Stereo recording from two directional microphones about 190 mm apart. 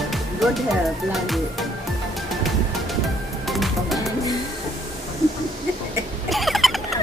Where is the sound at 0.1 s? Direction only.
Centre (ahead or behind).